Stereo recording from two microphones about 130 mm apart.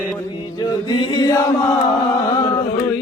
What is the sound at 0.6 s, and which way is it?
Music, 35° left (ahead or behind).